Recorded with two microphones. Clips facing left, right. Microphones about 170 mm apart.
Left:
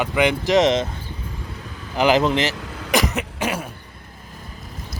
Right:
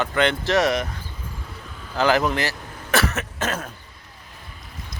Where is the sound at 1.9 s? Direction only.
15° left (ahead or behind).